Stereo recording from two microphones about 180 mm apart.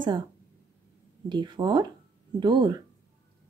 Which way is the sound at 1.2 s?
25° right (ahead or behind).